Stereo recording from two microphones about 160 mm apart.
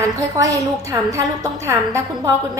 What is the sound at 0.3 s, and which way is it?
A woman's voice, 20° right (ahead or behind).